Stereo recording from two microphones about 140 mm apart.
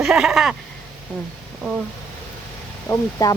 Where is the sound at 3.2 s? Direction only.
25° left (ahead or behind).